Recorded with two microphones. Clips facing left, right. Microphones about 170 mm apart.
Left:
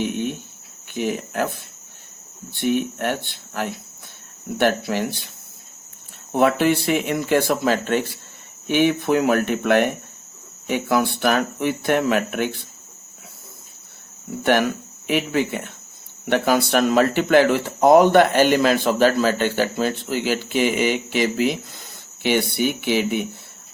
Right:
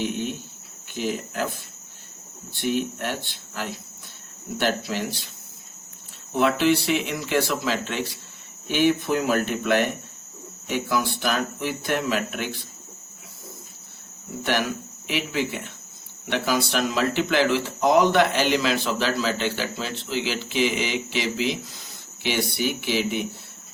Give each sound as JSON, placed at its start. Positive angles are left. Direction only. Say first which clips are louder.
{"t": 0.0, "sound": "cricket", "louder": "left 3 dB", "side_deg": 55}
{"t": 0.9, "sound": "speech", "louder": "left 4 dB", "side_deg": 55}
{"t": 2.5, "sound": "speech", "louder": "left 4 dB", "side_deg": 55}
{"t": 6.3, "sound": "speech", "louder": "left 3 dB", "side_deg": 55}
{"t": 15.0, "sound": "speech", "louder": "left 5 dB", "side_deg": 50}